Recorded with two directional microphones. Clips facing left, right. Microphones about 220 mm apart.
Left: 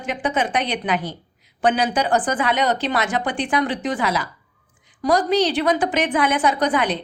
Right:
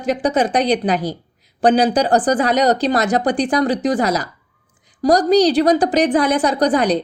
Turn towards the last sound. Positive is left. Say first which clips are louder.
# right 5 dB
turn(degrees=-40)  # may be behind; listen again after turning